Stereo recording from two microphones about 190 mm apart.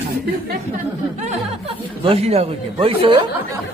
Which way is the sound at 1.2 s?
35° right (ahead or behind).